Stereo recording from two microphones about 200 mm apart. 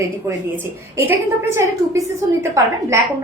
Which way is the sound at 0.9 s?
10° right (ahead or behind).